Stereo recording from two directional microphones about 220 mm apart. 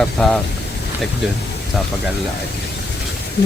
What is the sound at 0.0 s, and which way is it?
Speech, centre (ahead or behind).